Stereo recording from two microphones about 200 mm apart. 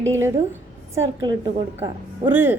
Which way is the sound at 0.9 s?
20° right (ahead or behind).